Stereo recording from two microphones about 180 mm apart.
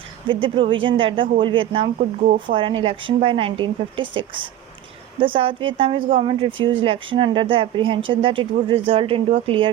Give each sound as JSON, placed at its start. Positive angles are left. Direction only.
{"t": 0.3, "sound": "speech", "side_deg": -30}